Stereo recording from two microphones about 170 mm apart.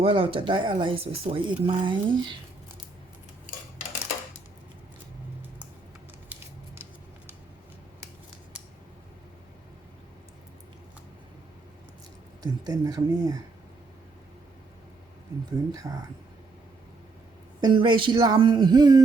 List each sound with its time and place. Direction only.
0.0 s speech: 30° right (ahead or behind)
12.4 s speech: 20° right (ahead or behind)
15.7 s speech: 20° right (ahead or behind)
17.6 s speech: 30° right (ahead or behind)